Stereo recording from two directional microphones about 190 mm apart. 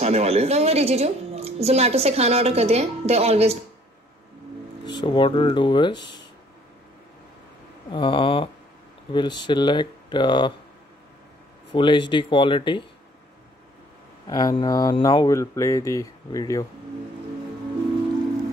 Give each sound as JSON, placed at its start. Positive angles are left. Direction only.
{"t": 0.0, "sound": "a woman's voice", "side_deg": -35}
{"t": 4.8, "sound": "speech", "side_deg": 25}
{"t": 7.9, "sound": "speech", "side_deg": 25}
{"t": 11.7, "sound": "speech", "side_deg": 25}
{"t": 14.3, "sound": "speech", "side_deg": 20}